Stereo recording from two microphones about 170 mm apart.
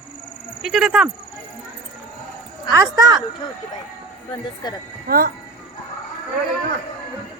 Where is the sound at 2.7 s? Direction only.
25° right (ahead or behind).